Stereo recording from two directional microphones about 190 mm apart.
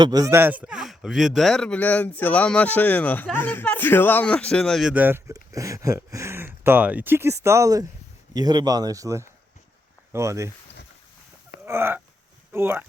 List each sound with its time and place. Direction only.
0.0 s speech: 20° right (ahead or behind)
11.6 s a sound: 10° right (ahead or behind)
12.5 s speech: 10° right (ahead or behind)